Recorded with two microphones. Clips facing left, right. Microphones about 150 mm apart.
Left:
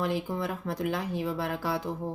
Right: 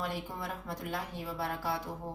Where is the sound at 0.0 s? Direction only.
90° left.